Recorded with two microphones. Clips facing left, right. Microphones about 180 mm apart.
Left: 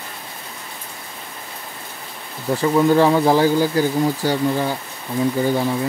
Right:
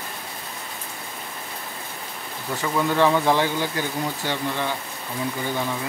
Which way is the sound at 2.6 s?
30° left (ahead or behind).